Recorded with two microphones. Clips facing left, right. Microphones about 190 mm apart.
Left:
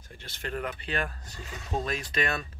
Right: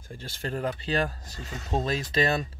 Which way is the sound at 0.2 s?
35° right (ahead or behind).